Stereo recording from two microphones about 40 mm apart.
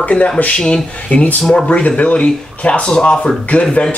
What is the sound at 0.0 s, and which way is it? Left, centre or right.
Speech, left.